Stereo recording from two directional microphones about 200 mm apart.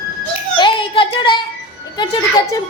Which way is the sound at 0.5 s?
25° left (ahead or behind).